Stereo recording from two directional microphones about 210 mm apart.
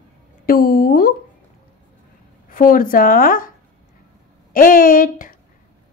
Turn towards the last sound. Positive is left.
turn(degrees=40)  # may be behind; listen again after turning